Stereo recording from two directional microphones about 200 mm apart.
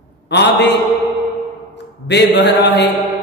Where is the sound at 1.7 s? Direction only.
60° left (ahead or behind).